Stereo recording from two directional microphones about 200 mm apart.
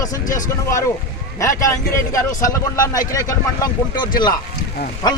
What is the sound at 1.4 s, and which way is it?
A man's voice, 15° left (ahead or behind).